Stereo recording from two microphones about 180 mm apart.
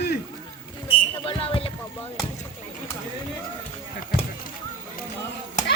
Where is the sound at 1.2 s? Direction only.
30° left (ahead or behind).